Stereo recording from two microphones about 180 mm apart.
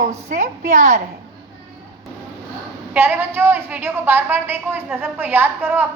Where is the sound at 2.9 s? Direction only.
10° right (ahead or behind).